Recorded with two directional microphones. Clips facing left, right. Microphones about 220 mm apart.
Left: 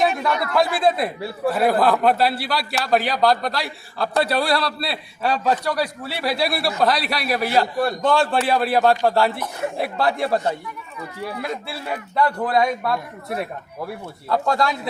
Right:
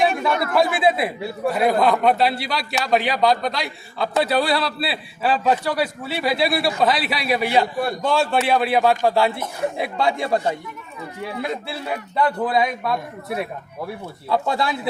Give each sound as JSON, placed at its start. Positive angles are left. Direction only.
{"t": 0.5, "sound": "a man's voice", "side_deg": -5}
{"t": 11.3, "sound": "speech", "side_deg": -25}
{"t": 12.1, "sound": "a man's voice", "side_deg": -5}
{"t": 14.3, "sound": "a man's voice", "side_deg": -5}